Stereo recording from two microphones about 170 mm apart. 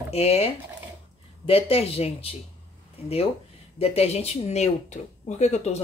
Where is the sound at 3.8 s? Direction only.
35° left (ahead or behind).